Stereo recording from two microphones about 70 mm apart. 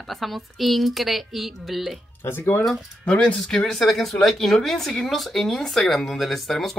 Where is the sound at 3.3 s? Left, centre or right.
Centre.